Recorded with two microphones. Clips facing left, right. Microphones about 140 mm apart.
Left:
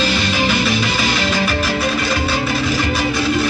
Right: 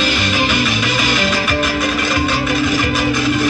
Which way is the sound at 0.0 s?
35° left (ahead or behind).